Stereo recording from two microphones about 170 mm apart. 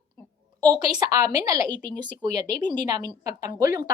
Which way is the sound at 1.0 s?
20° right (ahead or behind).